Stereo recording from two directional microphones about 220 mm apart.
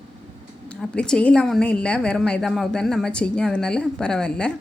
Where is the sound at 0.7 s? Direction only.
5° left (ahead or behind).